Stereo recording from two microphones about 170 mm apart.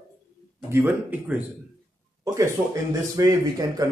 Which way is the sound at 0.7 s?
15° right (ahead or behind).